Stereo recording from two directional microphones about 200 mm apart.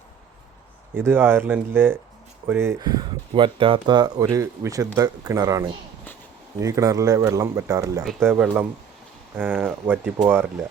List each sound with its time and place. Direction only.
0.9 s speech: 10° right (ahead or behind)